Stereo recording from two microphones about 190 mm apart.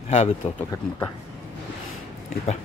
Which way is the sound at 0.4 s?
30° left (ahead or behind).